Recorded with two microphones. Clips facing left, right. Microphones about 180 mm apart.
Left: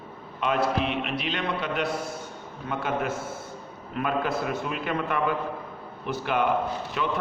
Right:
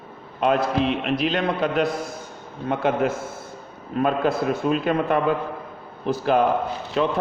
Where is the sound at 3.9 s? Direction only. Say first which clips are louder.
Right 6 dB; 30° right (ahead or behind).